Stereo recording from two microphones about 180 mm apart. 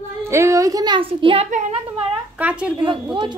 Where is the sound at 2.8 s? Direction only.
30° right (ahead or behind).